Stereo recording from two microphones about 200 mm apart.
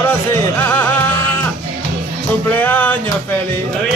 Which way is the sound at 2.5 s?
10° left (ahead or behind).